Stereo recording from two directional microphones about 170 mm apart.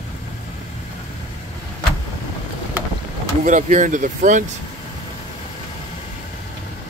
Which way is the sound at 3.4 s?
45° right (ahead or behind).